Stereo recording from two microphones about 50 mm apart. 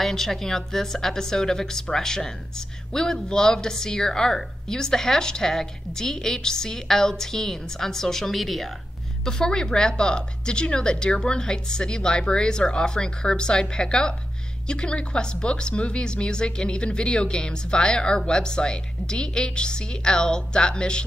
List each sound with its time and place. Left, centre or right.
0.0 s speech: centre
9.2 s speech: centre